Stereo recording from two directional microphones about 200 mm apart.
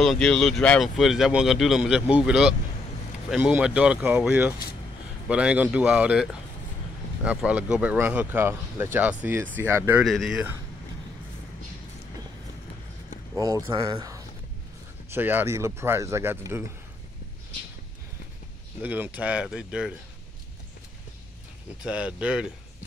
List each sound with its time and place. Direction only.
0.0 s speech: centre (ahead or behind)
10.0 s speech: centre (ahead or behind)
13.4 s speech: 20° right (ahead or behind)
18.8 s speech: 10° right (ahead or behind)
21.8 s speech: 5° right (ahead or behind)